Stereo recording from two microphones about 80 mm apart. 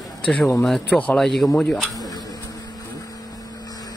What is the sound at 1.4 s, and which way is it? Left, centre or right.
Speech, centre.